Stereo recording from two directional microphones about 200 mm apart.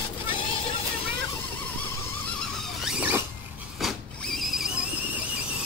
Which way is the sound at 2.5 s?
Centre (ahead or behind).